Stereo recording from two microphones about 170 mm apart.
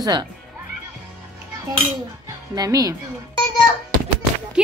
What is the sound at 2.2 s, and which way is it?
Speech, 20° right (ahead or behind).